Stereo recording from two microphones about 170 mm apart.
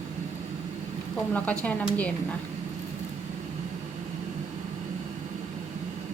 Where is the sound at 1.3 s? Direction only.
10° left (ahead or behind).